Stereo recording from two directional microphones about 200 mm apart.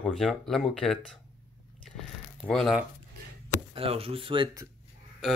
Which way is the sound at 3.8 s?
30° right (ahead or behind).